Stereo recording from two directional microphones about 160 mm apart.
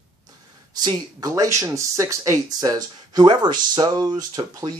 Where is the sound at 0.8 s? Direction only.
20° right (ahead or behind).